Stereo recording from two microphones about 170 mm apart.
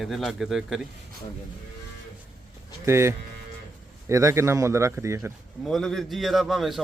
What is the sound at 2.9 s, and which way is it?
A man's voice, 15° right (ahead or behind).